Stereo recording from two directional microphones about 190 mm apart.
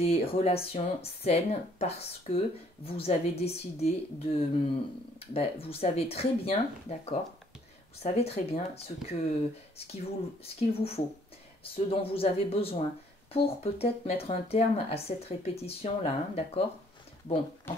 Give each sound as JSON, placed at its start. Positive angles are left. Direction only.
{"t": 0.0, "sound": "speech", "side_deg": 30}
{"t": 10.6, "sound": "speech", "side_deg": 30}